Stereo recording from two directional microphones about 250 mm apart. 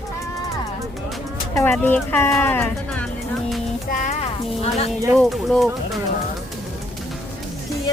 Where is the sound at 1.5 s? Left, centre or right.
Centre.